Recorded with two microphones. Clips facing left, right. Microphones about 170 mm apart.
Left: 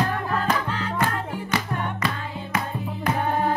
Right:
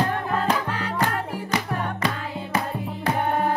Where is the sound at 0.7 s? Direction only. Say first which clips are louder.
Even; 10° right (ahead or behind).